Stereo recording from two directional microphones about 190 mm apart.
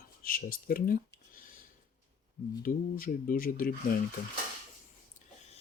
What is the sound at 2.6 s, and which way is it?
Speech, 50° left (ahead or behind).